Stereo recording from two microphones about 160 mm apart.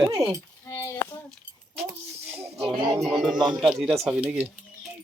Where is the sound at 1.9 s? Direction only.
15° right (ahead or behind).